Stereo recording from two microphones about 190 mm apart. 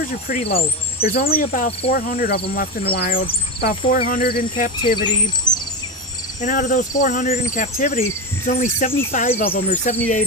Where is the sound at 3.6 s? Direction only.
45° left (ahead or behind).